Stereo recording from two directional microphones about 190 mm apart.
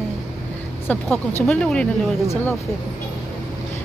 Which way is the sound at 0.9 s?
10° left (ahead or behind).